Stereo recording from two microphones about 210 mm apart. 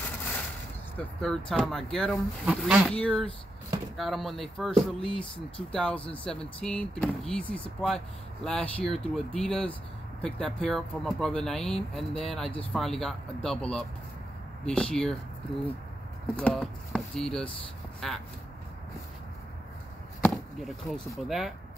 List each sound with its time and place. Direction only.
0.9 s speech: 5° left (ahead or behind)
5.0 s speech: 25° left (ahead or behind)
5.7 s speech: 5° left (ahead or behind)
5.9 s speech: 25° left (ahead or behind)
6.2 s speech: 5° left (ahead or behind)
16.3 s speech: 5° left (ahead or behind)
20.2 s chop: centre (ahead or behind)
21.2 s speech: centre (ahead or behind)